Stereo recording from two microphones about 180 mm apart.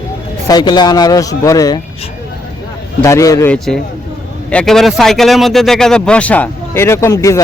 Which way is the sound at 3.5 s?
5° left (ahead or behind).